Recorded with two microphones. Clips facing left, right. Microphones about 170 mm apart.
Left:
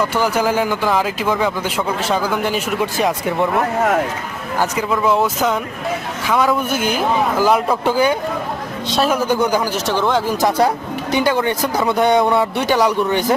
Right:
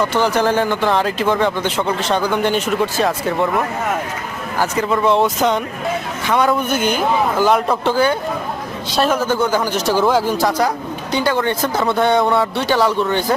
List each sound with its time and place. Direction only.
0.1 s a man's voice: 10° left (ahead or behind)
4.6 s a man's voice: 15° left (ahead or behind)
4.9 s speech: 5° left (ahead or behind)
8.9 s speech: centre (ahead or behind)
9.1 s a man's voice: 15° left (ahead or behind)
9.7 s speech: 5° right (ahead or behind)
10.3 s a man's voice: 20° left (ahead or behind)